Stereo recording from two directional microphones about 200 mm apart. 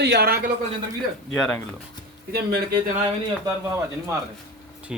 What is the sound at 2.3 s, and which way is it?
Speech, 55° right (ahead or behind).